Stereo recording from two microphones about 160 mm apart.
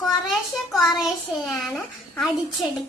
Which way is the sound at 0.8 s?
Centre (ahead or behind).